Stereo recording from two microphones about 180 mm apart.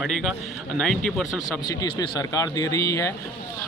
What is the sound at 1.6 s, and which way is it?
Speech, 20° left (ahead or behind).